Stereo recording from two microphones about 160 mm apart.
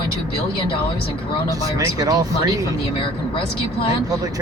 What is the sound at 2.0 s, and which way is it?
Speech, 25° right (ahead or behind).